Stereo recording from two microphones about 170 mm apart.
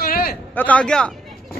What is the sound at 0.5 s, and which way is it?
Speech, 10° left (ahead or behind).